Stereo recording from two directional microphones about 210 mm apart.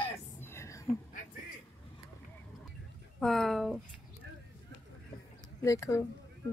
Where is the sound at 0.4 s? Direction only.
10° left (ahead or behind).